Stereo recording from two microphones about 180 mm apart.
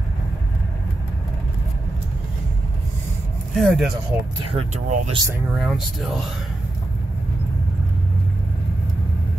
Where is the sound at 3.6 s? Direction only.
Centre (ahead or behind).